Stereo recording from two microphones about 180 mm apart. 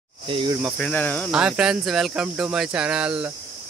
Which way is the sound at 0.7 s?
10° left (ahead or behind).